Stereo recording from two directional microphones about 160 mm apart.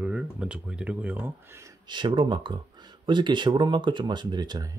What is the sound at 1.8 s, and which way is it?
Speech, 30° right (ahead or behind).